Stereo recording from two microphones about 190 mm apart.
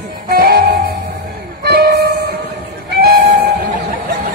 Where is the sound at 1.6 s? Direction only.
55° right (ahead or behind).